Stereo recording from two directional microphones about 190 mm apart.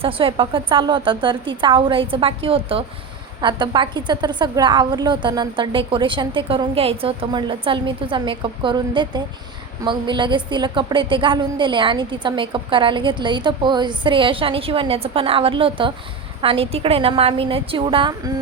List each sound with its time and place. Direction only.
0.0 s a woman's voice: 30° right (ahead or behind)